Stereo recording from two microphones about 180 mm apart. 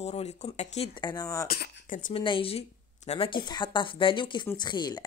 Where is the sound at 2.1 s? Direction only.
30° left (ahead or behind).